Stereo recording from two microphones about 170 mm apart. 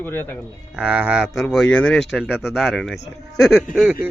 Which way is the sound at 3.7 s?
5° right (ahead or behind).